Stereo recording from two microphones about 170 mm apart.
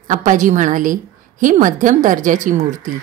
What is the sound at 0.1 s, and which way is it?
A woman's voice, 50° right (ahead or behind).